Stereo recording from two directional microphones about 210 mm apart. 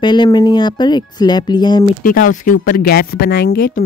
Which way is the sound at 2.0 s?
40° left (ahead or behind).